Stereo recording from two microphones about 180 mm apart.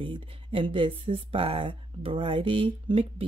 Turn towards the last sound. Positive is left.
turn(degrees=-30)  # may be behind; listen again after turning